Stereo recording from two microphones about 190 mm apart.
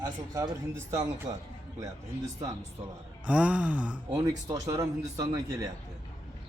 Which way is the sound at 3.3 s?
5° right (ahead or behind).